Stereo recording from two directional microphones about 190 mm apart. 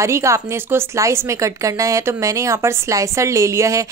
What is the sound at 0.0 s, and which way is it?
Speech, 15° right (ahead or behind).